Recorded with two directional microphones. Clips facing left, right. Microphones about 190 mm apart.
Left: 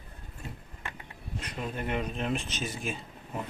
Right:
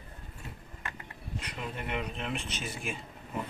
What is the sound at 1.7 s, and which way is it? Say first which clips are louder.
Speech: left 4 dB; 40° left (ahead or behind).